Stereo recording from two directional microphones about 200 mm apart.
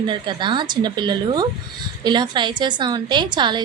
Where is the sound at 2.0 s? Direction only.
20° right (ahead or behind).